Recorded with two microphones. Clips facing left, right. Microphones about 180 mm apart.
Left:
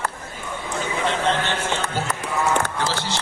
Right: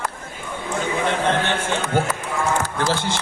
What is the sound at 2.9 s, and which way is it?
Music, 50° right (ahead or behind).